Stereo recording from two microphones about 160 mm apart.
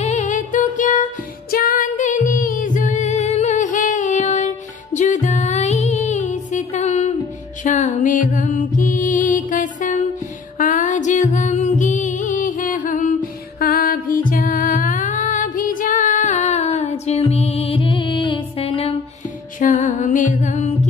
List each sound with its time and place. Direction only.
0.0 s music: 50° left (ahead or behind)
13.6 s music: 65° left (ahead or behind); by 18.9 s 40° left (ahead or behind)
19.6 s music: 50° left (ahead or behind)